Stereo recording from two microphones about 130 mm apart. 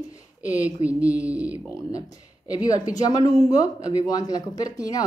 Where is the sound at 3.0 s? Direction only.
30° left (ahead or behind).